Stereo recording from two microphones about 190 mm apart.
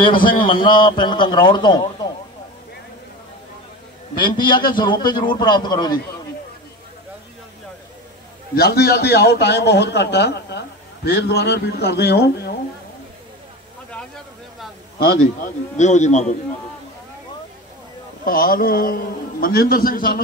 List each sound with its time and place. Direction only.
0.1 s a man's voice: 45° left (ahead or behind)
0.4 s a man's voice: 25° left (ahead or behind)
4.2 s a man's voice: 50° left (ahead or behind)
4.7 s a man's voice: 25° left (ahead or behind)
8.5 s a man's voice: 55° left (ahead or behind)
15.0 s a man's voice: 40° left (ahead or behind)
18.2 s a man's voice: 50° left (ahead or behind)